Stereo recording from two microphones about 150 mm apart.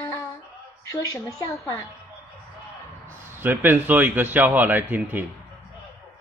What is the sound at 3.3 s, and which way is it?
A man's voice, 15° right (ahead or behind).